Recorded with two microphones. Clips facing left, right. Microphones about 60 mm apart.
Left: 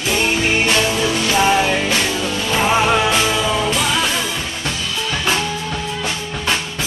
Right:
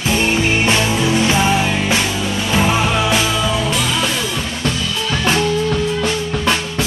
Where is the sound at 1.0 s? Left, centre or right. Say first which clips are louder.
Right 3 dB; centre.